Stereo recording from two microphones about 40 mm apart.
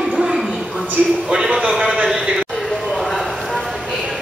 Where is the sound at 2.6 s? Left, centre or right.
Centre.